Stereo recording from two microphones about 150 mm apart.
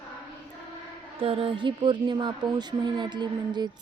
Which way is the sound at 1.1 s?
35° right (ahead or behind).